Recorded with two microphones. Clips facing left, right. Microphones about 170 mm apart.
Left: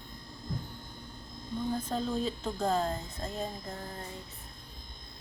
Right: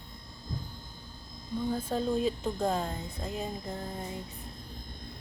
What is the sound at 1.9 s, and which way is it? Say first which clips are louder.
Speech: right 3 dB; 10° right (ahead or behind).